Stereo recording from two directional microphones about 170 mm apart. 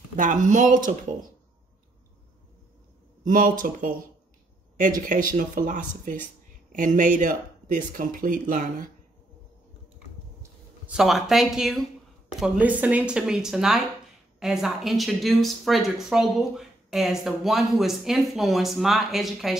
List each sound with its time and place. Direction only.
0.1 s speech: 50° right (ahead or behind)
3.3 s speech: 50° right (ahead or behind)
10.9 s speech: centre (ahead or behind)